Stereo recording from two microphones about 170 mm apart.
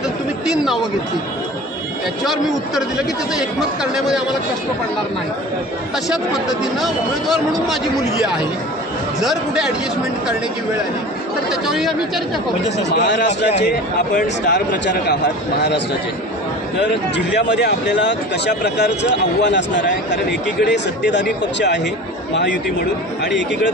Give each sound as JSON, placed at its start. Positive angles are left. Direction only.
{"t": 3.3, "sound": "speech", "side_deg": -5}
{"t": 6.6, "sound": "speech", "side_deg": 0}
{"t": 9.2, "sound": "speech", "side_deg": 0}
{"t": 11.6, "sound": "speech", "side_deg": 0}
{"t": 12.7, "sound": "a man's voice", "side_deg": 90}
{"t": 14.5, "sound": "a man's voice", "side_deg": 85}
{"t": 16.8, "sound": "a man's voice", "side_deg": 90}